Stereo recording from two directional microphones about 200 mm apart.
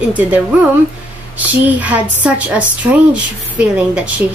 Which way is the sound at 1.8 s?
5° right (ahead or behind).